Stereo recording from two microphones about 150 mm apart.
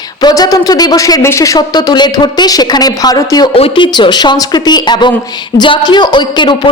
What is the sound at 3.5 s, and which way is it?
Speech, 40° left (ahead or behind).